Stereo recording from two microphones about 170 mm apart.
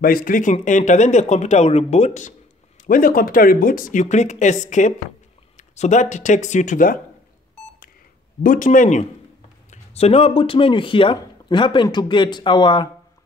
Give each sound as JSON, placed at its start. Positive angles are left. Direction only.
{"t": 0.0, "sound": "speech", "side_deg": 55}
{"t": 2.8, "sound": "speech", "side_deg": 55}
{"t": 8.4, "sound": "speech", "side_deg": 50}